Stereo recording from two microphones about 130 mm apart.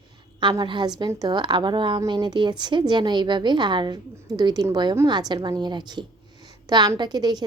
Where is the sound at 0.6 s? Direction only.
35° right (ahead or behind).